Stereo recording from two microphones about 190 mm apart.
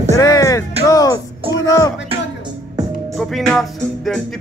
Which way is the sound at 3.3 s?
Centre (ahead or behind).